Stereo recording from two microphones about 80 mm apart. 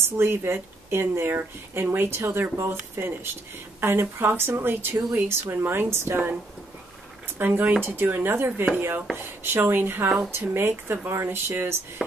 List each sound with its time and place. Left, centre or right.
0.0 s speech: right
7.3 s speech: right
10.0 s speech: centre
10.5 s speech: right